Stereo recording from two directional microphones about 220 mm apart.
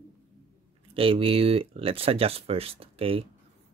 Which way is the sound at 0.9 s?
25° right (ahead or behind).